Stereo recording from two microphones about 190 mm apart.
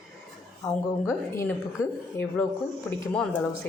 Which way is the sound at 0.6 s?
15° left (ahead or behind).